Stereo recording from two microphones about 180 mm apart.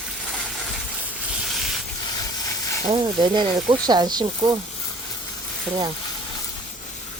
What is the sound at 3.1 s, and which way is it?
Speech, 25° right (ahead or behind).